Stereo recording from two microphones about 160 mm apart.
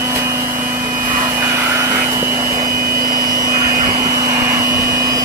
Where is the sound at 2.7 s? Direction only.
65° right (ahead or behind).